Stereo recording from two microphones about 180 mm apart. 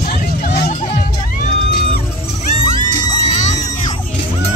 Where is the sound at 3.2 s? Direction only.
40° left (ahead or behind).